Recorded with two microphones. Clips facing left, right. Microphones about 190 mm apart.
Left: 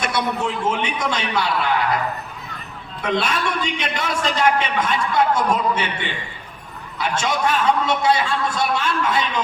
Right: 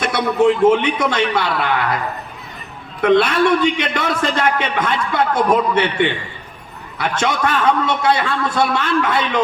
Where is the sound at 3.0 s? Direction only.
60° right (ahead or behind).